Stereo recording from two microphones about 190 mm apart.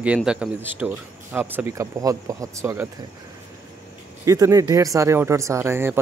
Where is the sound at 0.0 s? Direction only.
5° right (ahead or behind).